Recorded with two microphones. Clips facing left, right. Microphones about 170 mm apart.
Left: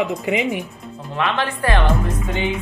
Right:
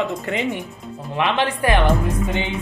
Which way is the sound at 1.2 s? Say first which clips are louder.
Right 2 dB; 15° right (ahead or behind).